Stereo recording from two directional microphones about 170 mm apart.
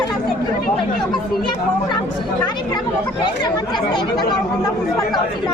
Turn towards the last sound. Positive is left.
turn(degrees=20)  # may be behind; listen again after turning